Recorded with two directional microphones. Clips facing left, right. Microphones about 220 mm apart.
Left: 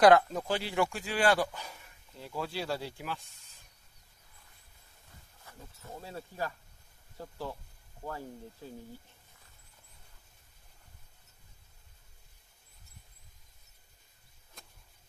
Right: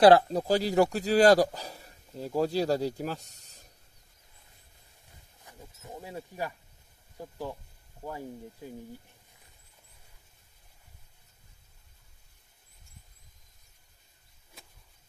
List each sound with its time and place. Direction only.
0.0 s speech: 30° right (ahead or behind)
5.4 s speech: 15° right (ahead or behind)
14.6 s a sound: 5° right (ahead or behind)